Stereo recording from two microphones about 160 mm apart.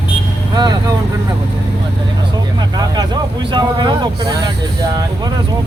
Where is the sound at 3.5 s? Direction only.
25° right (ahead or behind).